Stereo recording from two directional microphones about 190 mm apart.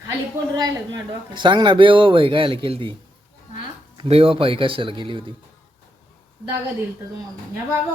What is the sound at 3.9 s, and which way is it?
A man's voice, 30° right (ahead or behind).